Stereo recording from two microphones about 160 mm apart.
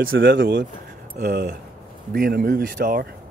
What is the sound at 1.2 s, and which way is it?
Speech, 75° right (ahead or behind).